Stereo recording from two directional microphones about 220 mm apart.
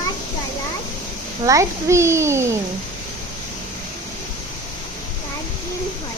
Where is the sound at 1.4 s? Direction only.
15° right (ahead or behind).